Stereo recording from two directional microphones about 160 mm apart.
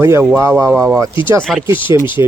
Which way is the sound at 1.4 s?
Centre (ahead or behind).